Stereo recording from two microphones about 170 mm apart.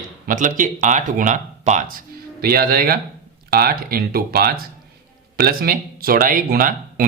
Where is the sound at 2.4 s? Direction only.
60° right (ahead or behind).